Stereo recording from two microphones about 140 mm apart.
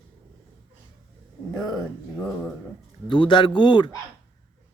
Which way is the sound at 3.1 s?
35° left (ahead or behind).